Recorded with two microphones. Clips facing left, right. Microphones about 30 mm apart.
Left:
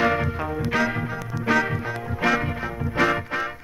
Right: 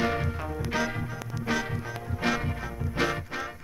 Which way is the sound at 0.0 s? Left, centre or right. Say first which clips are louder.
Left 6 dB; left.